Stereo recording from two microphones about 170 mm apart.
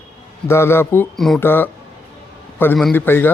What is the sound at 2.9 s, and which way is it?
Speech, 15° left (ahead or behind).